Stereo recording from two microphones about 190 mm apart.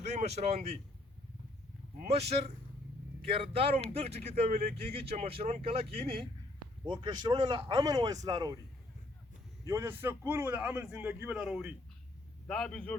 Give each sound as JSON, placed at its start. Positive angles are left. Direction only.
{"t": 0.0, "sound": "speech", "side_deg": -35}
{"t": 3.2, "sound": "speech", "side_deg": -30}
{"t": 9.6, "sound": "a man's voice", "side_deg": -15}